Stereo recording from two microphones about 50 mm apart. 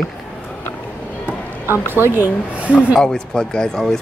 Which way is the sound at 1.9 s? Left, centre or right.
Right.